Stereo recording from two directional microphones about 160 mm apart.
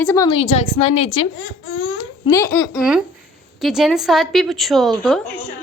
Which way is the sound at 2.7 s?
5° right (ahead or behind).